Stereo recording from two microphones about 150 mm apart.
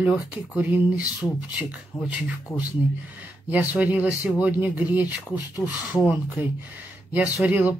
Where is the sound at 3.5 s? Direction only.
10° right (ahead or behind).